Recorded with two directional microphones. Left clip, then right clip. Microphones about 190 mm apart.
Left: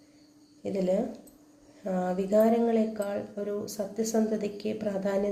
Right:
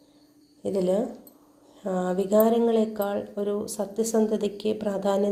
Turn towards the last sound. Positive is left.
turn(degrees=-25)  # may be behind; listen again after turning